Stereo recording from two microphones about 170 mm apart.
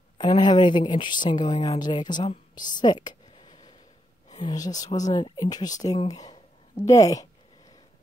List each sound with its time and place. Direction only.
0.2 s speech: 25° left (ahead or behind)
3.3 s a sound: 35° left (ahead or behind)
4.4 s speech: 25° left (ahead or behind)